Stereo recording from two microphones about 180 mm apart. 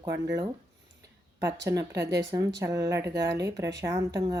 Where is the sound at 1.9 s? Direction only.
70° right (ahead or behind).